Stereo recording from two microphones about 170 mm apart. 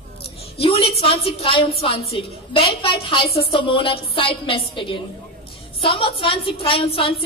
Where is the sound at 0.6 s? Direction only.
35° left (ahead or behind).